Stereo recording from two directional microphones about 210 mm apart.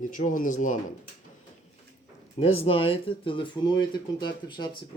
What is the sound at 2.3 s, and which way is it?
Speech, 25° left (ahead or behind).